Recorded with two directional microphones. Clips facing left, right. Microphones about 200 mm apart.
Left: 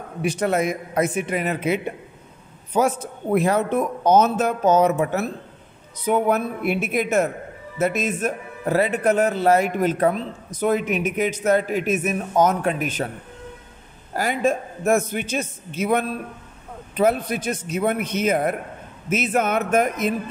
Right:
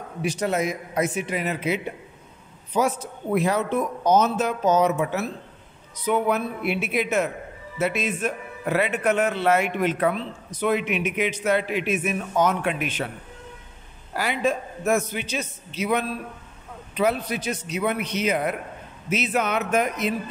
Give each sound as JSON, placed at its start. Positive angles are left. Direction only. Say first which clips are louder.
{"t": 0.2, "sound": "a man's voice", "louder": "left 3 dB", "side_deg": 55}
{"t": 14.1, "sound": "a man's voice", "louder": "left 3 dB", "side_deg": 45}